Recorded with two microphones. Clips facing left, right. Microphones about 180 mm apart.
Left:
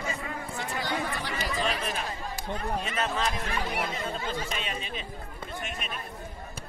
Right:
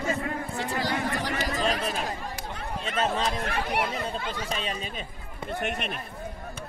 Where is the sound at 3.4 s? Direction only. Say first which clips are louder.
Right 3 dB; 65° right (ahead or behind).